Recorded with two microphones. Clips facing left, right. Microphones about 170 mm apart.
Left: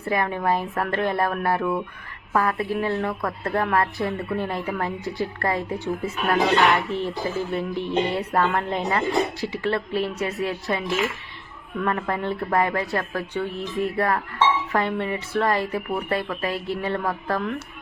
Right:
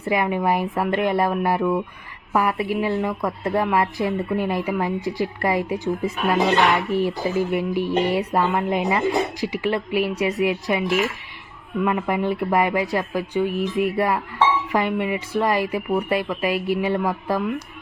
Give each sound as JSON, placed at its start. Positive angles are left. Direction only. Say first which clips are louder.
{"t": 0.0, "sound": "speech", "louder": "right 3 dB", "side_deg": -15}
{"t": 6.9, "sound": "speech", "louder": "right 5 dB", "side_deg": -10}